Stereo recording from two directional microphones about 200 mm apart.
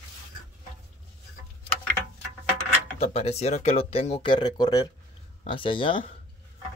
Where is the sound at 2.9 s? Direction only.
30° left (ahead or behind).